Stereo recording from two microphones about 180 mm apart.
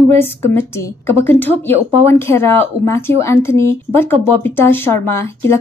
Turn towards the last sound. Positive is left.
turn(degrees=15)  # may be behind; listen again after turning